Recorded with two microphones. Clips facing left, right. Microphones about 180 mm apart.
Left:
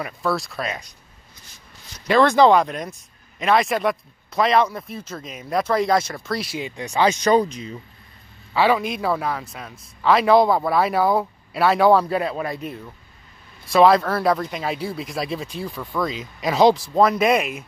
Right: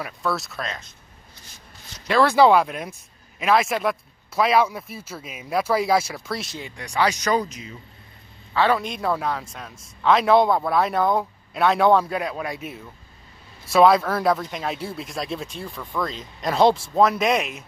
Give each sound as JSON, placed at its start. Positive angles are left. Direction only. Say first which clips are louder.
{"t": 0.0, "sound": "speech", "louder": "left 3 dB", "side_deg": 0}
{"t": 2.0, "sound": "speech", "louder": "left 2 dB", "side_deg": -5}
{"t": 6.8, "sound": "speech", "louder": "left 3 dB", "side_deg": 25}
{"t": 8.5, "sound": "speech", "louder": "left 2 dB", "side_deg": 10}